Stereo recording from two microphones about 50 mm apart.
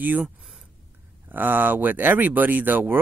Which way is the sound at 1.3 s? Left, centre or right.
Right.